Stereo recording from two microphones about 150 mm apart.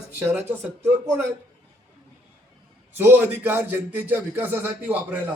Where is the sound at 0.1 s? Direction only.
15° right (ahead or behind).